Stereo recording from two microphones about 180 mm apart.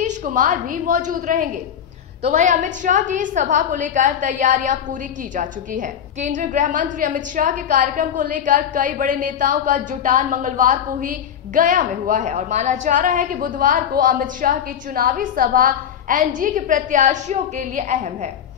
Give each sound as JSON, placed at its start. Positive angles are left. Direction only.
{"t": 0.0, "sound": "a woman's voice", "side_deg": -45}